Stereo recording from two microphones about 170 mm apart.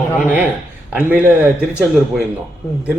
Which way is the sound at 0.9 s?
10° right (ahead or behind).